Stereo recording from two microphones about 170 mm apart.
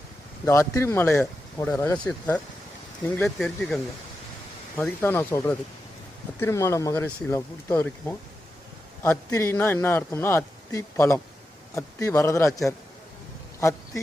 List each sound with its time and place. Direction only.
0.4 s speech: 15° left (ahead or behind); by 3.8 s centre (ahead or behind)
4.8 s speech: 10° left (ahead or behind)
13.6 s a sound: 15° left (ahead or behind)